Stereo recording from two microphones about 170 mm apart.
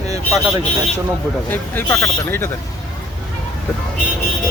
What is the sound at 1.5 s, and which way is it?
Speech, 10° left (ahead or behind).